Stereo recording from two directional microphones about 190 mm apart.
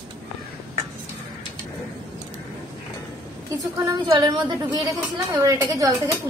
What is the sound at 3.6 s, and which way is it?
A woman's voice, 20° right (ahead or behind).